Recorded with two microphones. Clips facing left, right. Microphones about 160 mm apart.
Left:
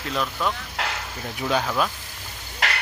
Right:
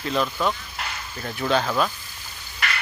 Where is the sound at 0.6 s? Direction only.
85° left.